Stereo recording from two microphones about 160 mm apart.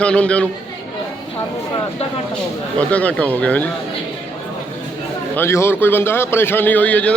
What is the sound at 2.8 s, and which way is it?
Speech, 10° left (ahead or behind).